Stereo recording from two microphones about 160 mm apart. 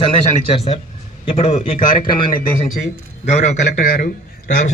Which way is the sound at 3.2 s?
45° left (ahead or behind).